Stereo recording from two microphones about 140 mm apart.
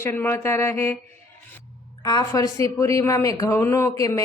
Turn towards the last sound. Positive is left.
turn(degrees=25)  # may be behind; listen again after turning